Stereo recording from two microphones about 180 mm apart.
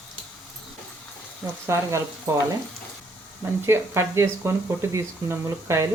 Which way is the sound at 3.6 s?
15° right (ahead or behind).